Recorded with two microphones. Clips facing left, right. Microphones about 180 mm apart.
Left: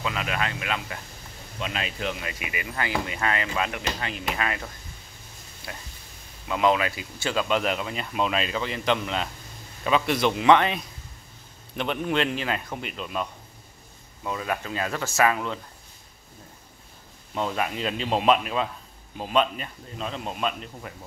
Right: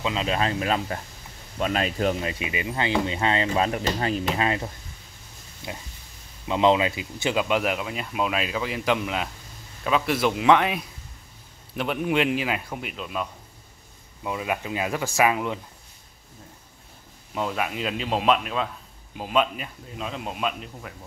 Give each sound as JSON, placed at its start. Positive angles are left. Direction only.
{"t": 0.0, "sound": "a man's voice", "side_deg": -25}
{"t": 2.2, "sound": "a man's voice", "side_deg": -25}
{"t": 14.2, "sound": "speech", "side_deg": -15}
{"t": 17.3, "sound": "a man's voice", "side_deg": -5}